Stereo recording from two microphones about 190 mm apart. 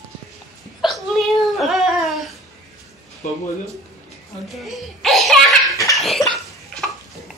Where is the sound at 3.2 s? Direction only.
45° left (ahead or behind).